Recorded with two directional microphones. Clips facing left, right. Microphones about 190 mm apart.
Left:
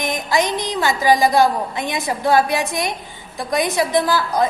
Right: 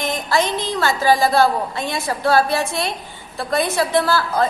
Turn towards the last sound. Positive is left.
turn(degrees=15)  # may be behind; listen again after turning